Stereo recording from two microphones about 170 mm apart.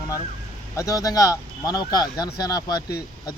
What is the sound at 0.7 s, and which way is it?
Speech, 20° left (ahead or behind).